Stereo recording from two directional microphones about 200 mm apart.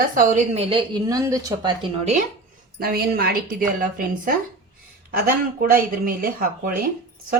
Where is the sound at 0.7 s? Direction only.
20° right (ahead or behind).